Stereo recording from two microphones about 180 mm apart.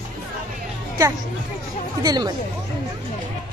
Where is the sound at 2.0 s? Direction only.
20° right (ahead or behind).